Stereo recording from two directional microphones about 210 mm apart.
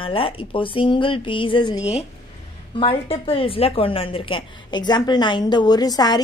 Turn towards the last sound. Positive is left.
turn(degrees=20)  # may be behind; listen again after turning